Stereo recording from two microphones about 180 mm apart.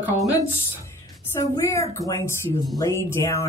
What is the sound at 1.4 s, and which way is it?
Speech, 20° left (ahead or behind).